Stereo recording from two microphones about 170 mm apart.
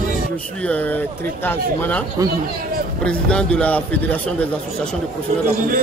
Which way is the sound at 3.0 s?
5° left (ahead or behind).